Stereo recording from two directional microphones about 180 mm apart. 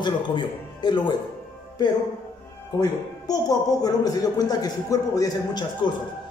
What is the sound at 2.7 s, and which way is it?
Speech, 20° left (ahead or behind).